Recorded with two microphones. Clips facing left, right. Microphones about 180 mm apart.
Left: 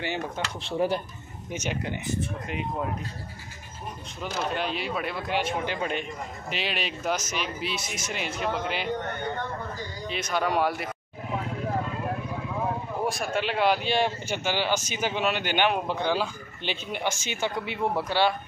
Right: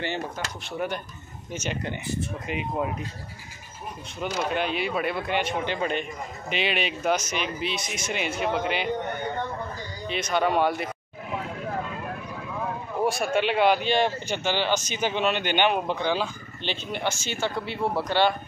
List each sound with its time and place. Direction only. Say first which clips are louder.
0.6 s speech: left 5 dB; 30° left (ahead or behind)
1.5 s speech: even; 10° left (ahead or behind)
2.4 s speech: right 2 dB; 5° right (ahead or behind)
4.2 s speech: right 3 dB; centre (ahead or behind)
13.0 s speech: right 5 dB; centre (ahead or behind); by 17.7 s 15° left (ahead or behind)
18.0 s speech: right 2 dB; 5° left (ahead or behind)